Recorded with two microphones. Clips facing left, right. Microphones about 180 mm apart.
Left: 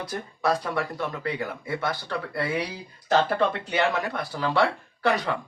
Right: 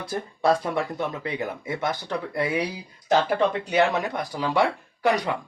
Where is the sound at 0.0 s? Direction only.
25° right (ahead or behind).